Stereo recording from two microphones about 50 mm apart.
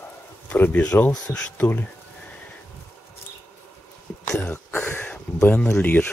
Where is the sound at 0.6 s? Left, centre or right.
Left.